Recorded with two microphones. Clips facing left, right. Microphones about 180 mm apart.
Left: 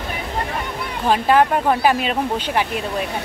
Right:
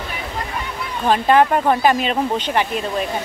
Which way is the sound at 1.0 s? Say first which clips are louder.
Right 1 dB; 5° left (ahead or behind).